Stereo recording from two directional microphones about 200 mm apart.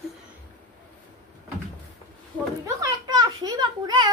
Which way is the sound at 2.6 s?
20° right (ahead or behind).